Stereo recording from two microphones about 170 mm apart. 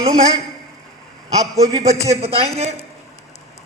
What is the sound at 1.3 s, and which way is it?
Speech, 20° right (ahead or behind).